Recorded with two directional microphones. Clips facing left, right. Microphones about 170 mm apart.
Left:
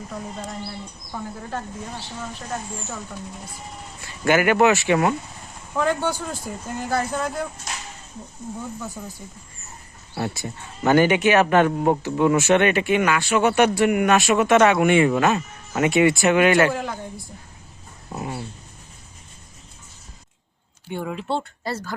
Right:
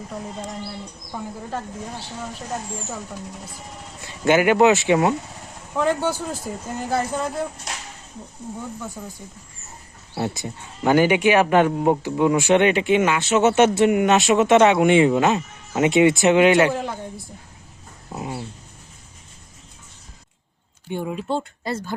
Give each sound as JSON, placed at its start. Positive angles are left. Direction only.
{"t": 4.0, "sound": "speech", "side_deg": -20}
{"t": 5.7, "sound": "speech", "side_deg": 0}
{"t": 9.0, "sound": "speech", "side_deg": -5}
{"t": 10.2, "sound": "speech", "side_deg": -20}
{"t": 16.7, "sound": "speech", "side_deg": 0}
{"t": 18.1, "sound": "speech", "side_deg": -15}
{"t": 20.9, "sound": "speech", "side_deg": -20}